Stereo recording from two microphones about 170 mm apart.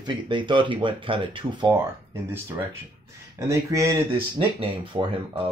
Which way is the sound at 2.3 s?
15° right (ahead or behind).